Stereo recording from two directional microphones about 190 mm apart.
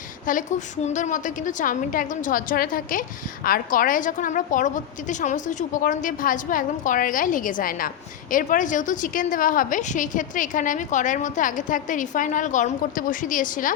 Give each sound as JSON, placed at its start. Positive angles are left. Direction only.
{"t": 0.3, "sound": "a woman's voice", "side_deg": 45}